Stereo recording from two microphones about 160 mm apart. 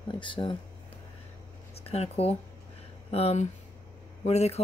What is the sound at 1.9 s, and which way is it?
Speech, 40° left (ahead or behind).